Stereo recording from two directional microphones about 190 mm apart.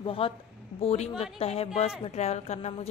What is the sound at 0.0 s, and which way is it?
A woman's voice, 30° left (ahead or behind).